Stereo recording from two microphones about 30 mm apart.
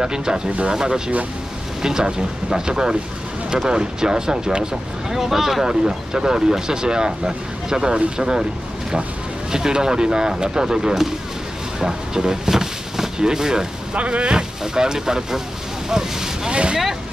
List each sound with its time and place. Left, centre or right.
0.0 s speech: right
5.1 s speech: centre
5.7 s speech: right
9.5 s speech: right
13.9 s speech: right
14.3 s speech: right
16.4 s speech: right